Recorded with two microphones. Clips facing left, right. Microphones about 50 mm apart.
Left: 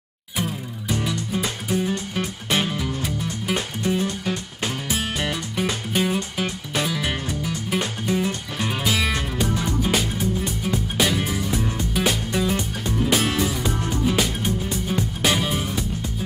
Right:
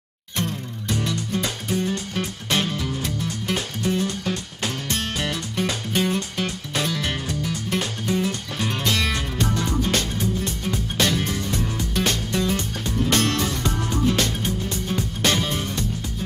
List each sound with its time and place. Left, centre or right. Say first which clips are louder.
0.4 s music: even; centre